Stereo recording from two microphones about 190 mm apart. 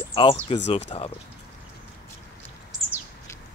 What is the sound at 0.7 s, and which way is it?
Speech, 35° left (ahead or behind).